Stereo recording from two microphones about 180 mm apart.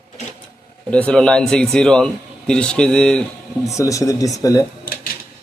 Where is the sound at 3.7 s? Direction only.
20° left (ahead or behind).